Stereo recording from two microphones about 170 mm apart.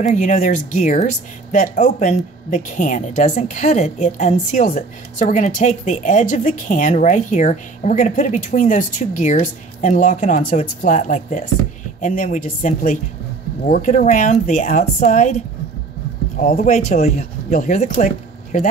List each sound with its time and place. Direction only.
0.0 s a woman's voice: 45° left (ahead or behind)
16.3 s a woman's voice: 45° left (ahead or behind)